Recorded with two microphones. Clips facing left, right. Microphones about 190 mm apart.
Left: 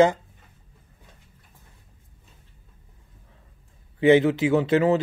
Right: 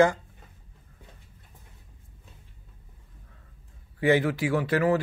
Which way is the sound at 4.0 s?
20° left (ahead or behind).